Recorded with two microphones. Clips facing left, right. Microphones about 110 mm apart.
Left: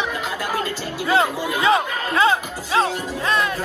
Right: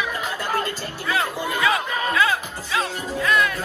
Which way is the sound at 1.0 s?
25° left (ahead or behind).